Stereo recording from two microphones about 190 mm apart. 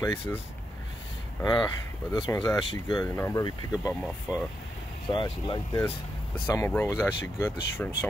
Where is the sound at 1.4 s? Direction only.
25° left (ahead or behind).